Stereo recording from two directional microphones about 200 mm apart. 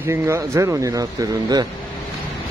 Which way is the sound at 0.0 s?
15° right (ahead or behind).